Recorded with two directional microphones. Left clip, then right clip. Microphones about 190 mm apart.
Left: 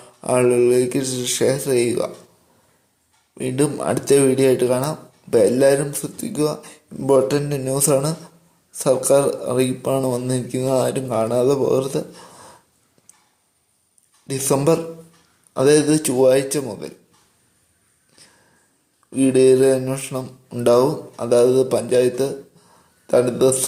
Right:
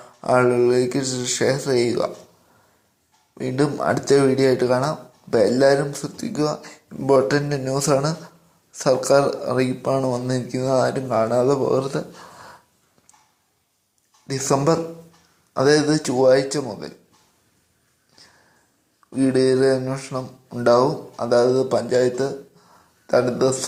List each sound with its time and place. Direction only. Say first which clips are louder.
0.0 s speech: even; 10° left (ahead or behind)
3.3 s speech: left 1 dB; 10° left (ahead or behind)
6.6 s speech: even; 25° left (ahead or behind)
6.8 s speech: left 1 dB; 10° left (ahead or behind)
9.6 s speech: left 1 dB; 20° left (ahead or behind)
14.3 s speech: left 1 dB; 10° left (ahead or behind)
19.2 s speech: left 4 dB; 15° left (ahead or behind)